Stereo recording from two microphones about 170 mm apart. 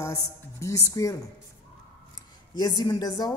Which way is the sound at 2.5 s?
25° left (ahead or behind).